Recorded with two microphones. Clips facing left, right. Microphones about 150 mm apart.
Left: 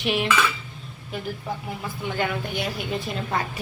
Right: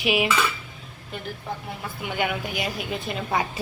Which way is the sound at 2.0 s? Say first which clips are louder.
Even; 10° right (ahead or behind).